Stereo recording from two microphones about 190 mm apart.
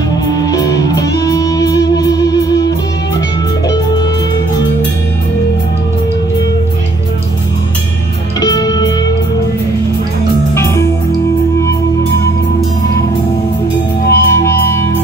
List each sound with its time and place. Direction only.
0.3 s music: 20° left (ahead or behind)
8.4 s music: 20° left (ahead or behind)
10.5 s music: 15° left (ahead or behind)
14.1 s music: 15° left (ahead or behind)